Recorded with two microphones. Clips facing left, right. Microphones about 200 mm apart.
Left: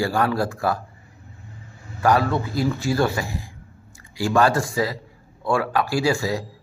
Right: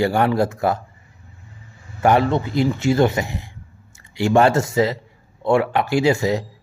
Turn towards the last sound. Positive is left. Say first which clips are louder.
# right 4 dB
turn(degrees=-20)  # may be behind; listen again after turning